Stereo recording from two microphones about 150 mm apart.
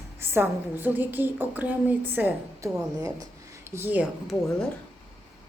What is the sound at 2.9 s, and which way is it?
Speech, 25° right (ahead or behind).